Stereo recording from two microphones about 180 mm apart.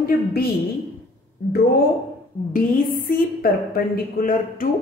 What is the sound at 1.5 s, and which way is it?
Speech, 60° left (ahead or behind).